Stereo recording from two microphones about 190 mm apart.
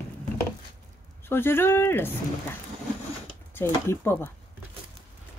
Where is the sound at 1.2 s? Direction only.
10° left (ahead or behind).